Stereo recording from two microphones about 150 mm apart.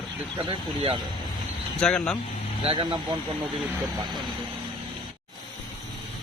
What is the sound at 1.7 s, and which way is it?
Speech, 5° left (ahead or behind).